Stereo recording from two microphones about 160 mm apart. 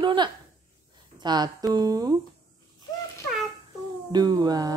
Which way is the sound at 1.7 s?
25° right (ahead or behind).